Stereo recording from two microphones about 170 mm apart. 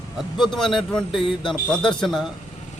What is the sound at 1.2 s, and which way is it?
Speech, 30° left (ahead or behind).